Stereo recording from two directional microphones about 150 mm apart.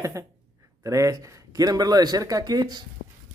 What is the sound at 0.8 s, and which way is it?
Speech, 20° right (ahead or behind).